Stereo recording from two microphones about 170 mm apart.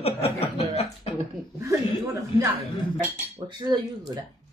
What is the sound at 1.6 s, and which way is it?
Speech, 20° right (ahead or behind).